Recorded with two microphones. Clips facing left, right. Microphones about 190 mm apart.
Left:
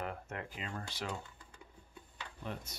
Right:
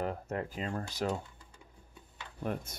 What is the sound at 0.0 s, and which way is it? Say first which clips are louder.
Speech: right 7 dB; 35° right (ahead or behind).